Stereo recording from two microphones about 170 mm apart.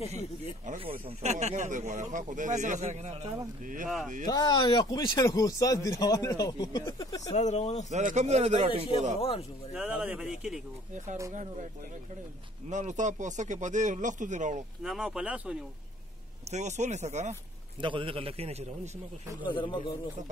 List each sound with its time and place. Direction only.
1.0 s speech: 40° right (ahead or behind)
4.3 s speech: 25° left (ahead or behind)
7.3 s speech: 40° left (ahead or behind)
7.9 s speech: 45° right (ahead or behind)
9.8 s speech: 5° right (ahead or behind)
12.6 s speech: 45° right (ahead or behind)
14.8 s speech: centre (ahead or behind)
16.4 s speech: 45° right (ahead or behind)
17.7 s speech: 30° right (ahead or behind)
19.4 s speech: 30° left (ahead or behind)